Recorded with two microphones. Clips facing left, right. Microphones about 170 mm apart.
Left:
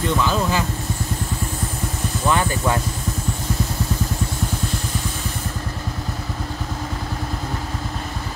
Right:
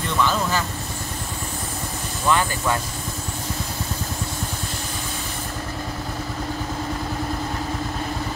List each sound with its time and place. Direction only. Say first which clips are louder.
0.2 s vehicle: left 1 dB; 15° left (ahead or behind)
2.2 s vehicle: left 1 dB; 20° left (ahead or behind)